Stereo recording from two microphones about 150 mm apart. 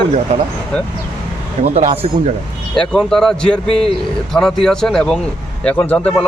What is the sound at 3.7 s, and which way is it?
Speech, 40° left (ahead or behind).